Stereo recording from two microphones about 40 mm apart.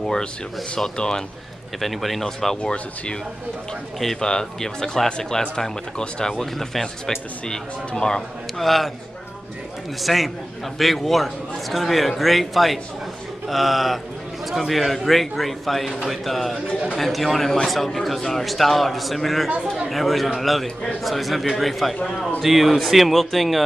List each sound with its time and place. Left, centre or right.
0.7 s speech: centre
1.8 s a man's voice: centre
2.2 s speech: centre
4.2 s speech: centre
8.5 s a man's voice: centre
10.0 s a man's voice: centre